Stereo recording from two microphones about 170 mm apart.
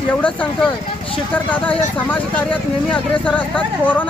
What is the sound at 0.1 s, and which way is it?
Speech, 10° left (ahead or behind).